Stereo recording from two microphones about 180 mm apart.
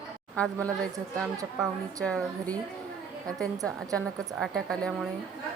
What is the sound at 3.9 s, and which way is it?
A woman's voice, centre (ahead or behind).